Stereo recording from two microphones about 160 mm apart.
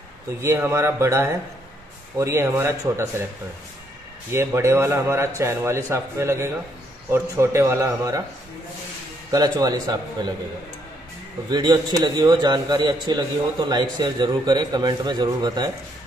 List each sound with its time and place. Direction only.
0.4 s speech: 15° right (ahead or behind)
4.3 s speech: 15° right (ahead or behind)
9.3 s a man's voice: 25° right (ahead or behind)
11.5 s a man's voice: 25° right (ahead or behind)